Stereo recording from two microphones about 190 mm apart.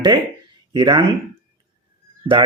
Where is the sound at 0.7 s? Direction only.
25° right (ahead or behind).